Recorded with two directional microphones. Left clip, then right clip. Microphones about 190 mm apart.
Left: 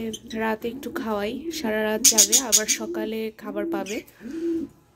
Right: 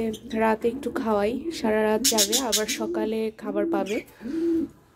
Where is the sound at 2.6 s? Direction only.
Centre (ahead or behind).